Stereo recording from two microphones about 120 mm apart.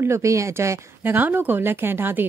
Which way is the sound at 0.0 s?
25° right (ahead or behind).